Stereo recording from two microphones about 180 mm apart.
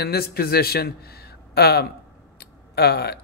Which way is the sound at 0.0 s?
60° left (ahead or behind).